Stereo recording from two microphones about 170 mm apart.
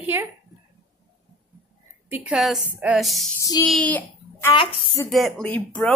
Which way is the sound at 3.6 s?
5° left (ahead or behind).